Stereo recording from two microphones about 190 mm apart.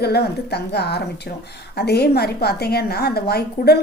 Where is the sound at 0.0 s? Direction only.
60° left (ahead or behind).